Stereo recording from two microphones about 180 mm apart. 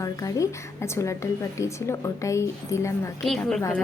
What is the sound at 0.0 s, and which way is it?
A woman's voice, 20° left (ahead or behind).